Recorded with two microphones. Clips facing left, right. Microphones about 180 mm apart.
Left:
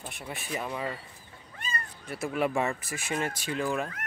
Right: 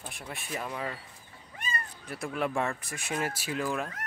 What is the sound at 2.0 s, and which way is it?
Speech, 5° left (ahead or behind).